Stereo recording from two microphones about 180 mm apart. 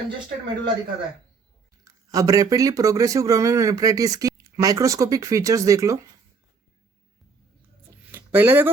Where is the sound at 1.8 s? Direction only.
20° right (ahead or behind).